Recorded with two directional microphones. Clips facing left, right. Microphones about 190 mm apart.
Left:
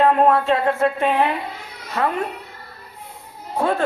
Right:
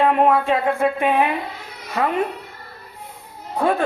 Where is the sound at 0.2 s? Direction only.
15° right (ahead or behind).